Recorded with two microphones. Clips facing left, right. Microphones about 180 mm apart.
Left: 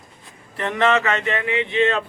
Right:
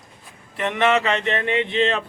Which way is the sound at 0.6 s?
20° right (ahead or behind).